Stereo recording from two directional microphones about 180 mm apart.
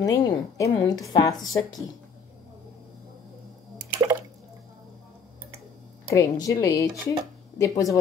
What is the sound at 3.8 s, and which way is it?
Water, 20° right (ahead or behind).